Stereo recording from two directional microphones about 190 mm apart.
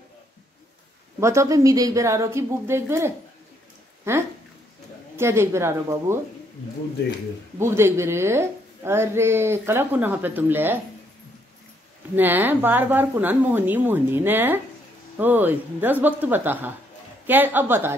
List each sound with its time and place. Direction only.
1.2 s a woman's voice: 15° right (ahead or behind)
7.5 s a woman's voice: 15° right (ahead or behind)
12.2 s a woman's voice: 10° right (ahead or behind)